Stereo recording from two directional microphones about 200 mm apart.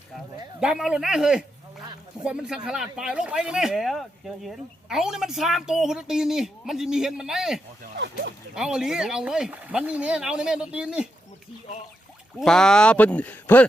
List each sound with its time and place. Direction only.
0.6 s a woman's voice: 5° right (ahead or behind)
7.9 s speech: 60° right (ahead or behind)
8.5 s a woman's voice: 5° right (ahead or behind)
12.4 s a woman's voice: 5° left (ahead or behind)